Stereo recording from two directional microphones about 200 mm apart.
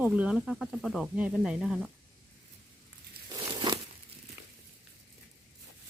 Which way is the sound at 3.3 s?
20° right (ahead or behind).